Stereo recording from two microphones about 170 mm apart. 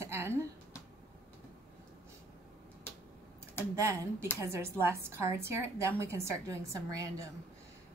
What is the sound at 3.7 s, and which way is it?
A woman's voice, 15° right (ahead or behind).